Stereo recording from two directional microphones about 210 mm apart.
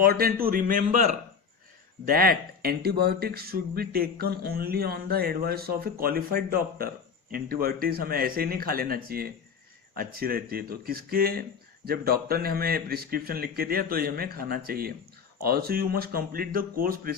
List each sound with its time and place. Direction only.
0.0 s speech: 45° right (ahead or behind)